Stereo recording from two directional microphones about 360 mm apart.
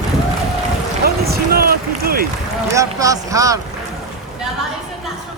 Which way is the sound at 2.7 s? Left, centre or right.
Centre.